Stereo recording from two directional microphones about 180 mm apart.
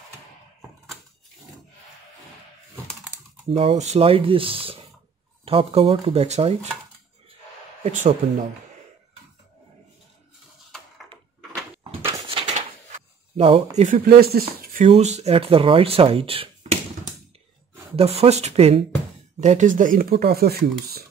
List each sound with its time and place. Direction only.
3.4 s speech: 35° right (ahead or behind)
7.8 s speech: 45° right (ahead or behind)
11.8 s a sound: 30° right (ahead or behind)
13.7 s speech: 50° right (ahead or behind); by 16.4 s 30° right (ahead or behind)
17.9 s speech: 35° right (ahead or behind); by 21.0 s 60° right (ahead or behind)